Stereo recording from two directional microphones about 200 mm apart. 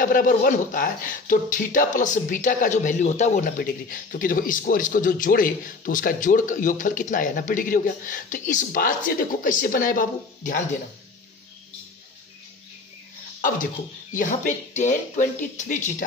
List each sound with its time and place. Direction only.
0.0 s speech: 40° left (ahead or behind)
14.1 s speech: 40° left (ahead or behind)